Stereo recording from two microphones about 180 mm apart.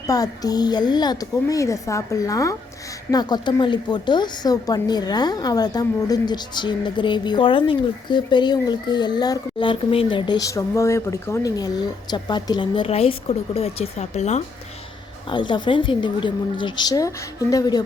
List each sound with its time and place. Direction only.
0.1 s a woman's voice: 20° left (ahead or behind); by 14.4 s 40° left (ahead or behind)
15.3 s a woman's voice: 25° left (ahead or behind)